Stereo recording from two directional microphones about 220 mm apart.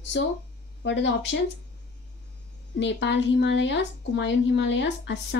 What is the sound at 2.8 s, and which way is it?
Speech, 55° left (ahead or behind).